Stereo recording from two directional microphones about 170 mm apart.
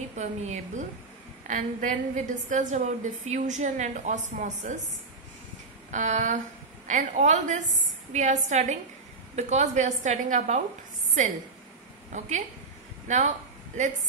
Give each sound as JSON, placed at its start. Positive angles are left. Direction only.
{"t": 0.2, "sound": "a woman's voice", "side_deg": -40}
{"t": 5.9, "sound": "a woman's voice", "side_deg": -45}
{"t": 12.1, "sound": "a woman's voice", "side_deg": -45}